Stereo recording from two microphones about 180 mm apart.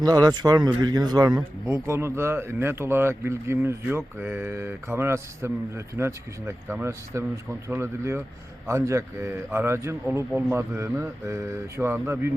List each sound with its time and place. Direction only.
0.0 s speech: 20° right (ahead or behind)